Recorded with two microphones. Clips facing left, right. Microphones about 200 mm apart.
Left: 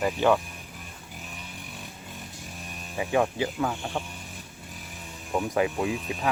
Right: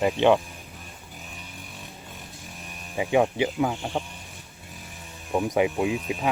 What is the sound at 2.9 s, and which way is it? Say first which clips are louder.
Speech: right 3 dB; 15° right (ahead or behind).